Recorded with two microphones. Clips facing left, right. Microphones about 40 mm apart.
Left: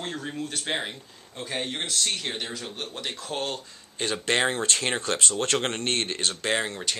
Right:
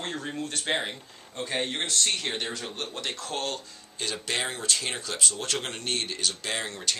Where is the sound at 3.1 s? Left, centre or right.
Centre.